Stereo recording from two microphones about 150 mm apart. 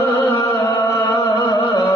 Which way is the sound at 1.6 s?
35° left (ahead or behind).